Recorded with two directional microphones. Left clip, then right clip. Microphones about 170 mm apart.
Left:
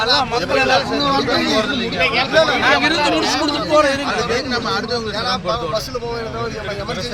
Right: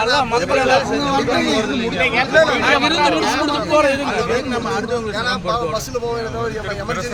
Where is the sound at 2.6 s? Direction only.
70° right (ahead or behind).